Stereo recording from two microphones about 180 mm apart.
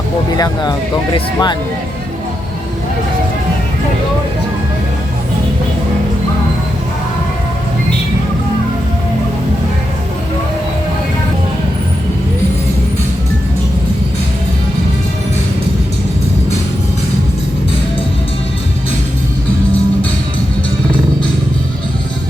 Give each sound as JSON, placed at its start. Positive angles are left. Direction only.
{"t": 0.3, "sound": "speech", "side_deg": 20}